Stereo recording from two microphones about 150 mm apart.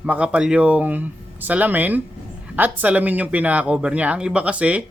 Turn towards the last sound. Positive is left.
turn(degrees=-10)  # may be behind; listen again after turning